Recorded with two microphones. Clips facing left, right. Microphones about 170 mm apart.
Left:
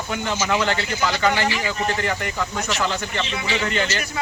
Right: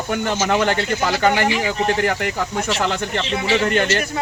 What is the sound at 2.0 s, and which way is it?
Speech, 65° right (ahead or behind).